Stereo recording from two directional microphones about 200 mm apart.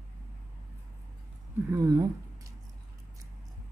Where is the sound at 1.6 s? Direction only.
15° right (ahead or behind).